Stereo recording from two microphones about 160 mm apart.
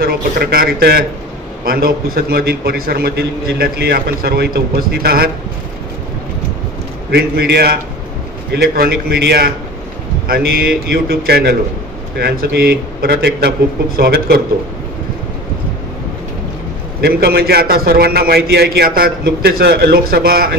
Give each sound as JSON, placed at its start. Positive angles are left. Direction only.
{"t": 0.0, "sound": "a man's voice", "side_deg": -70}
{"t": 7.1, "sound": "a man's voice", "side_deg": -85}
{"t": 10.2, "sound": "a man's voice", "side_deg": -65}
{"t": 11.1, "sound": "a man's voice", "side_deg": -85}
{"t": 17.0, "sound": "a man's voice", "side_deg": -75}